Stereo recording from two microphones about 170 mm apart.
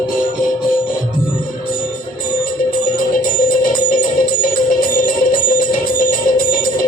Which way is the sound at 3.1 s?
50° left (ahead or behind).